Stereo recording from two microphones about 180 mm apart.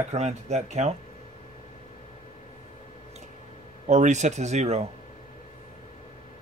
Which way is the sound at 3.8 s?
40° right (ahead or behind).